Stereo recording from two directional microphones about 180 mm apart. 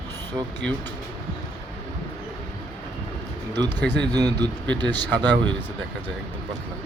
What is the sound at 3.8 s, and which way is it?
Speech, 70° right (ahead or behind).